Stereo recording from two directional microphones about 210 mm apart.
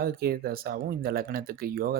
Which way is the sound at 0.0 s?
45° right (ahead or behind).